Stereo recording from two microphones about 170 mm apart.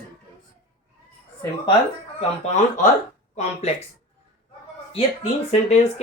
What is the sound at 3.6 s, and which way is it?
Speech, 40° left (ahead or behind).